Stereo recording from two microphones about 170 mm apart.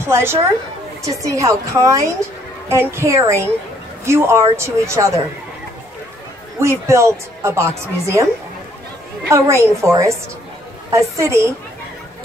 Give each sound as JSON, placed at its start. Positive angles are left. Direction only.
{"t": 0.0, "sound": "a woman's voice", "side_deg": -15}
{"t": 6.6, "sound": "a woman's voice", "side_deg": -15}
{"t": 9.3, "sound": "a woman's voice", "side_deg": -15}